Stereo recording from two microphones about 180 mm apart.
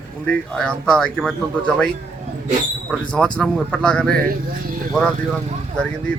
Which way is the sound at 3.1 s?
5° left (ahead or behind).